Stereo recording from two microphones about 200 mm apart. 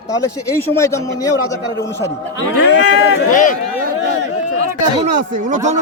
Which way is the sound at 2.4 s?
65° left (ahead or behind).